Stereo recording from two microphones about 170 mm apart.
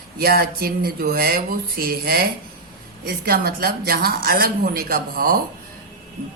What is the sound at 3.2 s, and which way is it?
A woman's voice, 65° right (ahead or behind).